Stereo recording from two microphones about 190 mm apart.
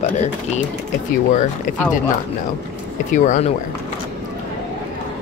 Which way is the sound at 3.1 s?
40° left (ahead or behind).